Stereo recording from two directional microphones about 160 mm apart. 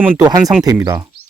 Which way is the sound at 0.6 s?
20° right (ahead or behind).